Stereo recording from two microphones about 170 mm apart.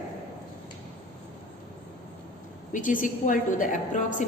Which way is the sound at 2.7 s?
50° left (ahead or behind).